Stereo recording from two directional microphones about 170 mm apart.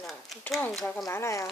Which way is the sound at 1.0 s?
15° left (ahead or behind).